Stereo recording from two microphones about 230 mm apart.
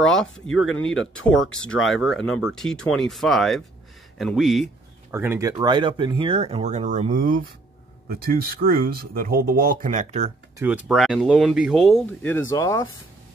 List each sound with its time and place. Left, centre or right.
0.0 s speech: centre; by 10.3 s right
10.6 s speech: centre